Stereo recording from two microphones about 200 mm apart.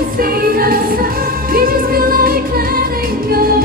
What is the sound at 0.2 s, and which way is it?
Music, 45° right (ahead or behind).